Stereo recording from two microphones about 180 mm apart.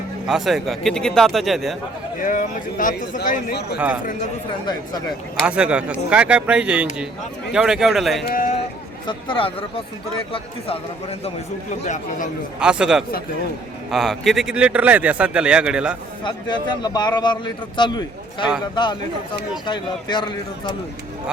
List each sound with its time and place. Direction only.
0.3 s speech: centre (ahead or behind)
2.2 s speech: 45° left (ahead or behind)
3.8 s speech: 10° right (ahead or behind)
5.5 s speech: 5° right (ahead or behind)
8.3 s speech: 45° left (ahead or behind)
9.0 s a man's voice: 25° left (ahead or behind)
12.5 s speech: 5° right (ahead or behind)
16.2 s a man's voice: 25° left (ahead or behind)